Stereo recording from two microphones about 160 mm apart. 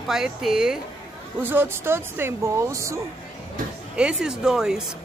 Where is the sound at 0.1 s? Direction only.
5° right (ahead or behind); by 3.0 s 20° right (ahead or behind).